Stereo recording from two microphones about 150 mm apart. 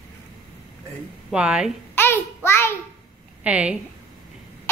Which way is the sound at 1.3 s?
5° right (ahead or behind).